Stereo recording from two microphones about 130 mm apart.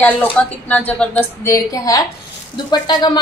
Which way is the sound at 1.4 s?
25° left (ahead or behind).